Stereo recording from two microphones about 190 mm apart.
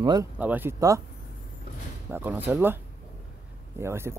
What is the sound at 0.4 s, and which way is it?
Speech, 10° right (ahead or behind).